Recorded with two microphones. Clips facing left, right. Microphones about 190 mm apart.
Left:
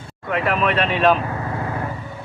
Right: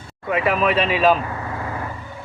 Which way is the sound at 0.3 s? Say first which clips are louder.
Right 1 dB; 5° right (ahead or behind).